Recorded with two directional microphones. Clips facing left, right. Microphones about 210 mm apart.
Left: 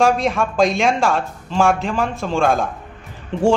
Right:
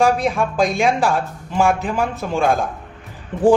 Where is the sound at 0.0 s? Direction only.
Centre (ahead or behind).